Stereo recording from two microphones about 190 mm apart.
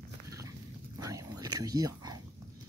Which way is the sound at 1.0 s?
20° right (ahead or behind).